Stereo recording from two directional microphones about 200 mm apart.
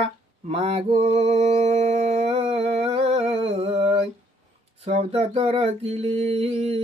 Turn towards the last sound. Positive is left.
turn(degrees=-30)  # may be behind; listen again after turning